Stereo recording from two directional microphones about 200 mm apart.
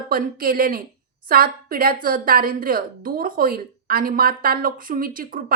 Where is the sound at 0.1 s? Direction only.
45° right (ahead or behind).